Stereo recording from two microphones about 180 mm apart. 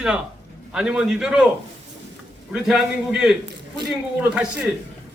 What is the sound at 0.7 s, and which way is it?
Speech, 5° right (ahead or behind).